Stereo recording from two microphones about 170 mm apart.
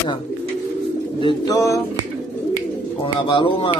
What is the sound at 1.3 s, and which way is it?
Speech, 20° left (ahead or behind).